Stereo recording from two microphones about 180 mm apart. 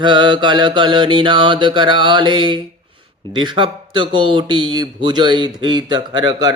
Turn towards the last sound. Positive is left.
turn(degrees=-25)  # may be behind; listen again after turning